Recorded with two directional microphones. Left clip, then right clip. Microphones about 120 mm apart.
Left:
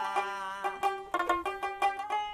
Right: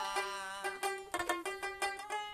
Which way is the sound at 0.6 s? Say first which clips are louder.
Left 8 dB; 20° right (ahead or behind).